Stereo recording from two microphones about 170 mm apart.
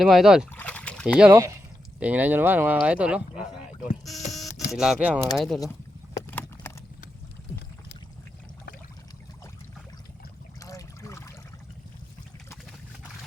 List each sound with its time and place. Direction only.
0.0 s speech: centre (ahead or behind)
0.5 s a sound: 10° left (ahead or behind)
1.2 s speech: 15° right (ahead or behind)
4.8 s speech: 5° right (ahead or behind)
6.1 s a sound: 15° left (ahead or behind)
10.6 s trickle: 20° left (ahead or behind)